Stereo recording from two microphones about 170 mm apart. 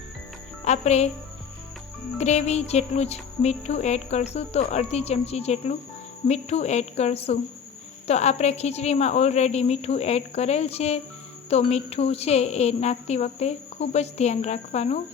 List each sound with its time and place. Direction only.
0.6 s speech: 40° left (ahead or behind)
2.1 s music: 40° left (ahead or behind)